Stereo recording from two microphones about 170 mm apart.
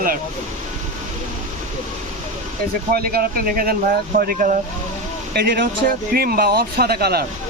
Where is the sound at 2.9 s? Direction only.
60° right (ahead or behind).